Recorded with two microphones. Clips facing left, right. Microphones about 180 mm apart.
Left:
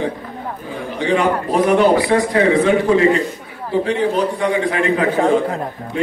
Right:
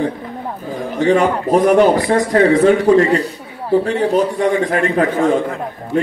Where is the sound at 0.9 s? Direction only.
45° right (ahead or behind).